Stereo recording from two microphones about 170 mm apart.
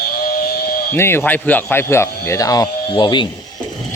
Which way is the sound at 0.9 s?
15° left (ahead or behind).